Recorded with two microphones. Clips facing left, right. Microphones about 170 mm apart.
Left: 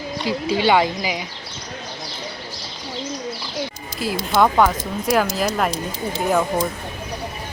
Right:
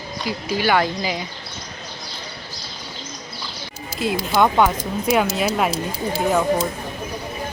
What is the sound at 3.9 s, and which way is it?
Speech, centre (ahead or behind).